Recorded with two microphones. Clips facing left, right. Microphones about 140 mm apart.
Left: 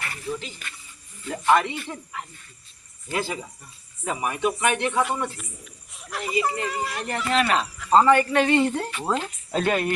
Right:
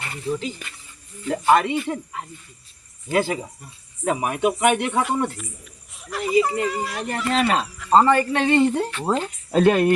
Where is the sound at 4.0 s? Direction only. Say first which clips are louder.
Right 4 dB; 55° right (ahead or behind).